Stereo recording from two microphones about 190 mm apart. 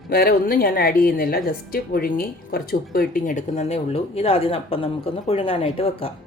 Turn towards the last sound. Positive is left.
turn(degrees=30)  # may be behind; listen again after turning